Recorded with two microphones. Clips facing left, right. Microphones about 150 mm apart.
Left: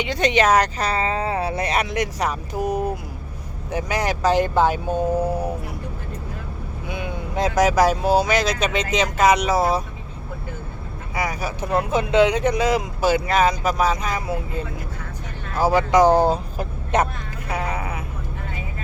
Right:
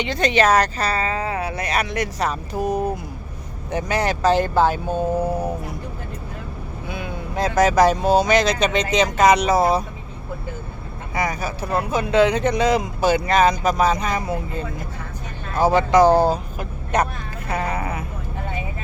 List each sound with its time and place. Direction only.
0.0 s speech: 15° left (ahead or behind)
6.8 s speech: 20° left (ahead or behind); by 9.8 s centre (ahead or behind)
11.1 s speech: 10° left (ahead or behind)
15.6 s speech: 10° left (ahead or behind)
16.6 s vehicle: 25° left (ahead or behind)
17.5 s speech: 10° left (ahead or behind)